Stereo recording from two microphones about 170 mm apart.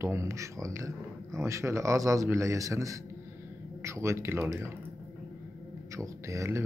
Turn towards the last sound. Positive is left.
turn(degrees=-15)  # may be behind; listen again after turning